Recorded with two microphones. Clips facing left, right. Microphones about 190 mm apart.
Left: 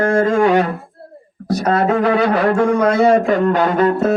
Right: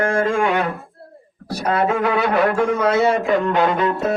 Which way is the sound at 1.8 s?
30° left (ahead or behind).